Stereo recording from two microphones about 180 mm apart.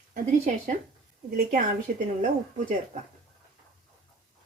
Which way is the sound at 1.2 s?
55° right (ahead or behind).